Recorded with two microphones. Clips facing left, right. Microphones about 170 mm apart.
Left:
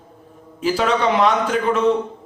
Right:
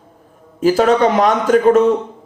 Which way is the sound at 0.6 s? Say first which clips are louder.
Right 7 dB; 45° right (ahead or behind).